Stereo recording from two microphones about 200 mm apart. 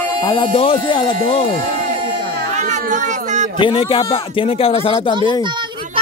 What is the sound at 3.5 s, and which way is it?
Speech, 25° left (ahead or behind).